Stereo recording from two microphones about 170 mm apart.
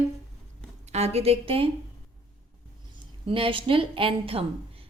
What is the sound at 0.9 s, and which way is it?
Speech, 40° right (ahead or behind).